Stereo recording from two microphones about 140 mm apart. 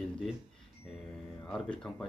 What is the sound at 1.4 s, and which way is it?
Speech, 5° left (ahead or behind).